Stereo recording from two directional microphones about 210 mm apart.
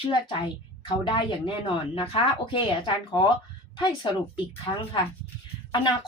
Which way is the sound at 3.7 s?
20° left (ahead or behind).